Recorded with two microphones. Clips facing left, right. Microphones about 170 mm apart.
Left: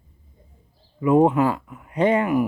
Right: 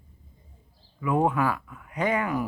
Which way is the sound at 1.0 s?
25° left (ahead or behind).